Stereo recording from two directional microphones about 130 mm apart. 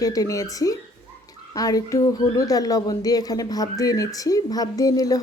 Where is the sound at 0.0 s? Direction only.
30° left (ahead or behind).